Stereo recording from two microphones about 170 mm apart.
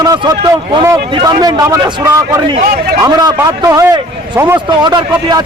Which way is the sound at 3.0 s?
20° right (ahead or behind).